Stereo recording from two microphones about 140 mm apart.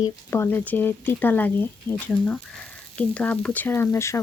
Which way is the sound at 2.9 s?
10° left (ahead or behind).